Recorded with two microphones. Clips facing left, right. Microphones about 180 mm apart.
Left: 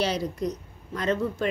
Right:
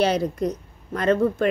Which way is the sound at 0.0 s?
55° right (ahead or behind).